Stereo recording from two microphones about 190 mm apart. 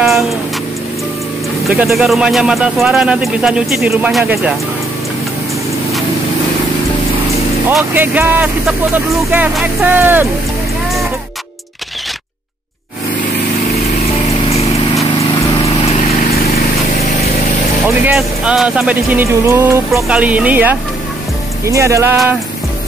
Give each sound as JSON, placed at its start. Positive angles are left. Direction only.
{"t": 1.7, "sound": "speech", "side_deg": 0}
{"t": 7.7, "sound": "speech", "side_deg": -10}
{"t": 17.8, "sound": "speech", "side_deg": -5}